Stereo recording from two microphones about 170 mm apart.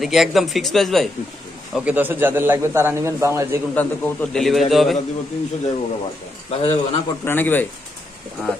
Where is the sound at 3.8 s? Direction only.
10° left (ahead or behind).